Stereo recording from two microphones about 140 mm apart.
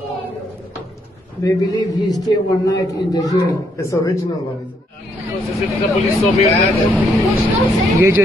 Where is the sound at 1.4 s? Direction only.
25° left (ahead or behind).